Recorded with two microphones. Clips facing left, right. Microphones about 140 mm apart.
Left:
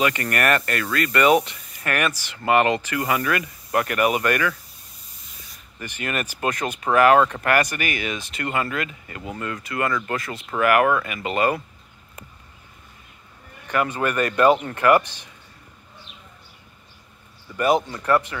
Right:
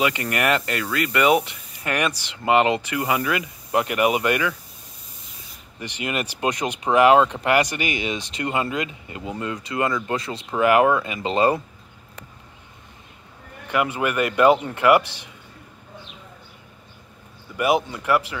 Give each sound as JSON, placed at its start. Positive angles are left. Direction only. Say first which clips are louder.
{"t": 0.0, "sound": "speech", "louder": "even", "side_deg": -15}
{"t": 5.9, "sound": "speech", "louder": "right 1 dB", "side_deg": -15}
{"t": 13.7, "sound": "speech", "louder": "even", "side_deg": -15}
{"t": 17.6, "sound": "speech", "louder": "left 1 dB", "side_deg": -10}